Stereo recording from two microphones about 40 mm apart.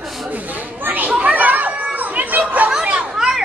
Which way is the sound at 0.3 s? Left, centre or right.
Right.